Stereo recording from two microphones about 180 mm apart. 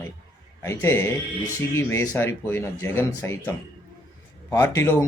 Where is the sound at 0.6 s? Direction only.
15° left (ahead or behind).